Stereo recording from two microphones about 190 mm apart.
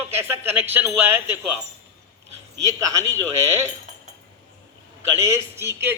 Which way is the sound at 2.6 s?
15° right (ahead or behind).